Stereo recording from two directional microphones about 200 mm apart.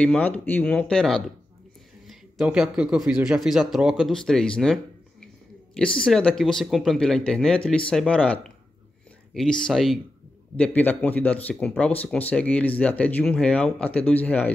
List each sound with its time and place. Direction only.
0.0 s speech: 5° left (ahead or behind)
5.9 s speech: 5° left (ahead or behind)